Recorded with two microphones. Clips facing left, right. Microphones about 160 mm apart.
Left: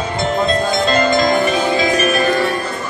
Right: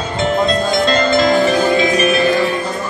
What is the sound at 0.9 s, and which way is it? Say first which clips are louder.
Music: right 1 dB; 15° left (ahead or behind).